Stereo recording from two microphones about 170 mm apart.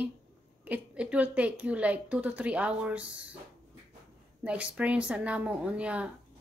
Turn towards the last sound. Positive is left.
turn(degrees=-5)  # may be behind; listen again after turning